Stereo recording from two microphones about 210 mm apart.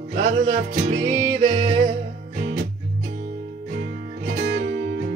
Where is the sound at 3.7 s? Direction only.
50° right (ahead or behind).